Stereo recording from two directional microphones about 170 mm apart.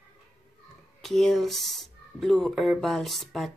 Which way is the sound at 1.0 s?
Centre (ahead or behind).